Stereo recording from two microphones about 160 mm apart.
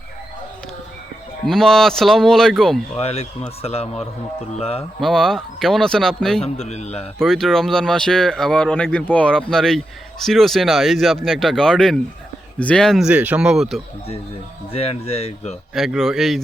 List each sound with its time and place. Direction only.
1.5 s speech: centre (ahead or behind)
2.9 s speech: 40° left (ahead or behind)
4.9 s speech: centre (ahead or behind)
6.4 s speech: 40° left (ahead or behind)
7.2 s speech: centre (ahead or behind)
14.7 s speech: 40° left (ahead or behind)
15.7 s speech: centre (ahead or behind)